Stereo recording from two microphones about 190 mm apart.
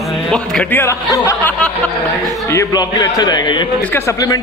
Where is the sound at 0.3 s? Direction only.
5° left (ahead or behind).